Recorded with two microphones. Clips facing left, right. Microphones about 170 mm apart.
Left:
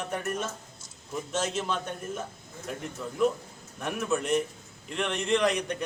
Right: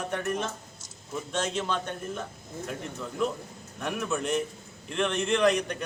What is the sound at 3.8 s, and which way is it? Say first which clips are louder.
A man's voice: left 1 dB; centre (ahead or behind).